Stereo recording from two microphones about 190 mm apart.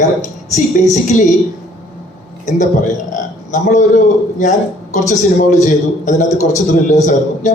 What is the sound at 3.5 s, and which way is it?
A man's voice, 40° left (ahead or behind).